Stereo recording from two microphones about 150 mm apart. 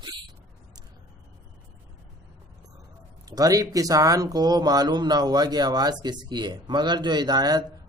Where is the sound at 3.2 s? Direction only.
25° right (ahead or behind).